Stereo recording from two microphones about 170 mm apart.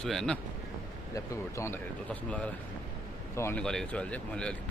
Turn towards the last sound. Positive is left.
turn(degrees=5)  # may be behind; listen again after turning